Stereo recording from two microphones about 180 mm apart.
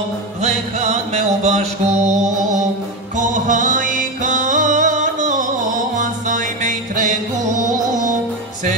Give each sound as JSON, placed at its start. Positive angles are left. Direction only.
{"t": 0.4, "sound": "music", "side_deg": -40}
{"t": 3.2, "sound": "music", "side_deg": -45}